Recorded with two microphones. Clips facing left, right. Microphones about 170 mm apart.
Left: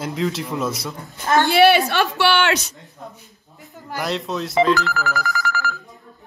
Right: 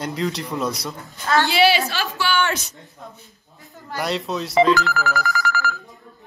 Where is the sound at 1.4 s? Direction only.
55° left (ahead or behind); by 2.7 s 80° left.